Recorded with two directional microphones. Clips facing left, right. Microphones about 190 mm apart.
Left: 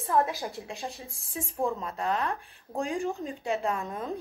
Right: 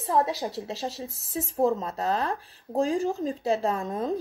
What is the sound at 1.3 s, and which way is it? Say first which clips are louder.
Speech: right 6 dB; 35° right (ahead or behind).